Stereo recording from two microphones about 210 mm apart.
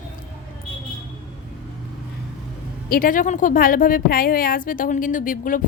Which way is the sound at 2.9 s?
40° left (ahead or behind).